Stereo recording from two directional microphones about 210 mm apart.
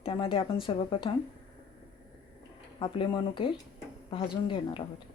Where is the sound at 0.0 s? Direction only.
25° left (ahead or behind).